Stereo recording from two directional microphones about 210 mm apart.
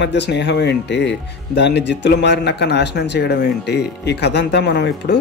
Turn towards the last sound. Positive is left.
turn(degrees=55)  # may be behind; listen again after turning